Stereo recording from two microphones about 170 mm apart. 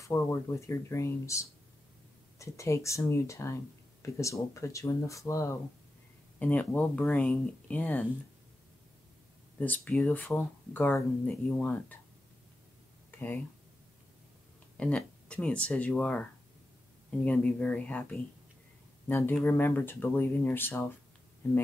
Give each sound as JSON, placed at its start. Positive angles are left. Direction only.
{"t": 0.0, "sound": "speech", "side_deg": 15}
{"t": 9.6, "sound": "speech", "side_deg": 10}
{"t": 14.8, "sound": "speech", "side_deg": 5}